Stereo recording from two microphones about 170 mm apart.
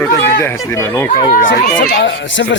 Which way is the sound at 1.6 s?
60° left (ahead or behind).